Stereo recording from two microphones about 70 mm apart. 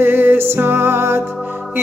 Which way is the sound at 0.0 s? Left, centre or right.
Right.